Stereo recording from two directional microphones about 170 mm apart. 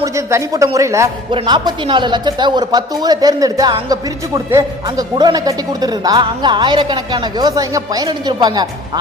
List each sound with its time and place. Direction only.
0.0 s a man's voice: 20° right (ahead or behind)